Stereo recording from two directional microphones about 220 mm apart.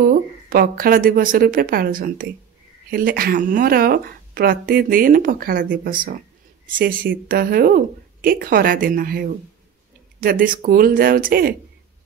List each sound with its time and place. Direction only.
0.0 s speech: 40° right (ahead or behind)